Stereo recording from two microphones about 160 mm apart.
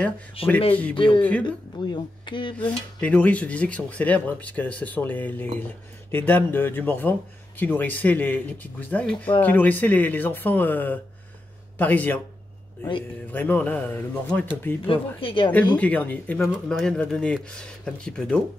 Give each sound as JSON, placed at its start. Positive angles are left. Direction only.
{"t": 0.4, "sound": "speech", "side_deg": 35}
{"t": 2.5, "sound": "speech", "side_deg": 10}
{"t": 13.3, "sound": "speech", "side_deg": 10}
{"t": 14.9, "sound": "speech", "side_deg": 35}
{"t": 15.7, "sound": "speech", "side_deg": 10}